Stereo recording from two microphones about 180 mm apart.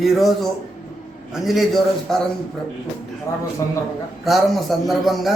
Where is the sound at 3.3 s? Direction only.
15° left (ahead or behind).